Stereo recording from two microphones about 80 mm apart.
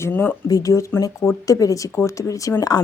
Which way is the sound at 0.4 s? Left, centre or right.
Left.